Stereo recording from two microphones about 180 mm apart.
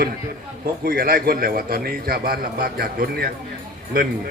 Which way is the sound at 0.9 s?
55° right (ahead or behind).